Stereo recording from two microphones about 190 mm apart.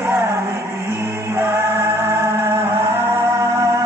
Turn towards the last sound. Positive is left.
turn(degrees=-15)  # may be behind; listen again after turning